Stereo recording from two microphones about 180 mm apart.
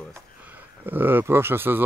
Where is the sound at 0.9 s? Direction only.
10° right (ahead or behind).